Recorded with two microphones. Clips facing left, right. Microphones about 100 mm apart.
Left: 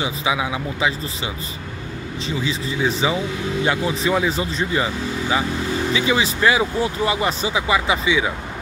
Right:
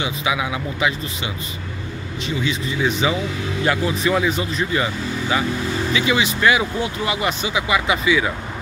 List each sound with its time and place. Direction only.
0.0 s speech: 25° left (ahead or behind)
5.9 s speech: 30° left (ahead or behind)